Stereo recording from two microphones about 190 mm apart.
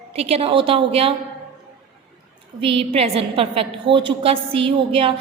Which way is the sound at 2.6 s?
30° right (ahead or behind).